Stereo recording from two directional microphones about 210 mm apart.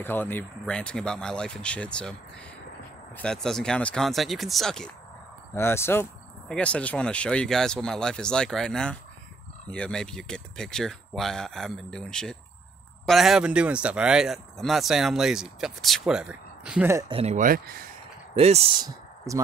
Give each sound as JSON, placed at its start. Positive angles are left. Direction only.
{"t": 0.0, "sound": "speech", "side_deg": 10}
{"t": 3.2, "sound": "speech", "side_deg": 5}
{"t": 17.1, "sound": "speech", "side_deg": -30}
{"t": 18.3, "sound": "speech", "side_deg": -30}